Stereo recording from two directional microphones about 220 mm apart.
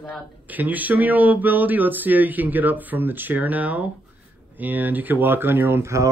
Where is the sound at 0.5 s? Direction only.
5° right (ahead or behind).